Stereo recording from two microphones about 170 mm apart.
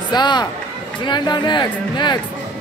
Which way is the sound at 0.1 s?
25° left (ahead or behind).